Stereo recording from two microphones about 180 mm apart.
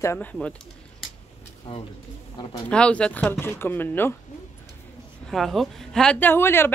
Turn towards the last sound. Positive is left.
turn(degrees=10)  # may be behind; listen again after turning